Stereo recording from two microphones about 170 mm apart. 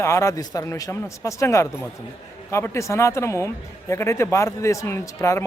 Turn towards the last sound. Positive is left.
turn(degrees=15)  # may be behind; listen again after turning